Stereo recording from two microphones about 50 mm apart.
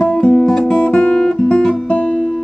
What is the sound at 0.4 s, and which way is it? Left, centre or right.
Guitar, centre.